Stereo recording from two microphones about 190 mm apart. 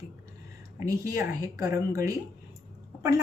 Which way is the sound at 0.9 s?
15° right (ahead or behind).